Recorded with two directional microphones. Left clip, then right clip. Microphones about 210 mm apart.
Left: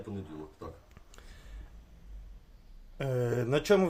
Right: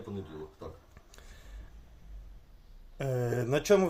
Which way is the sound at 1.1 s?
Centre (ahead or behind).